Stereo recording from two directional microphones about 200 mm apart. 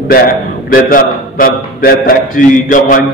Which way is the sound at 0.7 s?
45° left (ahead or behind).